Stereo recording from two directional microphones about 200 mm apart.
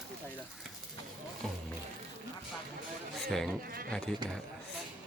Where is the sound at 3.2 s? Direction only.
Centre (ahead or behind).